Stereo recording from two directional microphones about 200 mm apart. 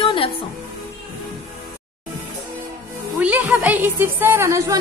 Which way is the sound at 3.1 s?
10° right (ahead or behind).